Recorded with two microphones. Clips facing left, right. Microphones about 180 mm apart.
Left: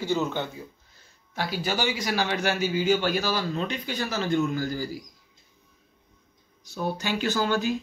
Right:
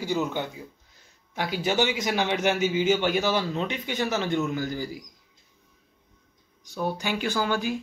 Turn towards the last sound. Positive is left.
turn(degrees=-10)  # may be behind; listen again after turning